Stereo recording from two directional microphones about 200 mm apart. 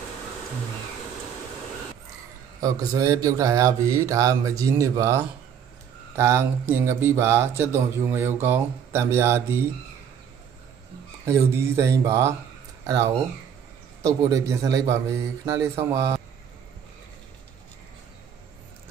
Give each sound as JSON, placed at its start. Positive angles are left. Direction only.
{"t": 2.6, "sound": "speech", "side_deg": -15}
{"t": 11.2, "sound": "speech", "side_deg": -15}